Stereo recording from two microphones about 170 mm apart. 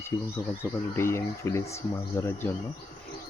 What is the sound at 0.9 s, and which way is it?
Speech, 15° left (ahead or behind).